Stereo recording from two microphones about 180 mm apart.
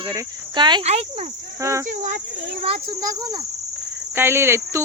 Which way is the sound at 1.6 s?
15° right (ahead or behind).